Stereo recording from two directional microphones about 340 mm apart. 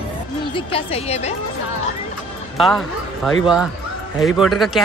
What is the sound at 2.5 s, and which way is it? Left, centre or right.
Speech, centre.